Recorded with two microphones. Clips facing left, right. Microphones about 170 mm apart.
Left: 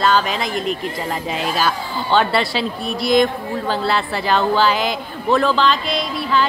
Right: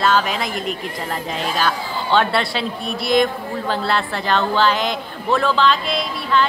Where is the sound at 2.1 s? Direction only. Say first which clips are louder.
Left 1 dB; centre (ahead or behind).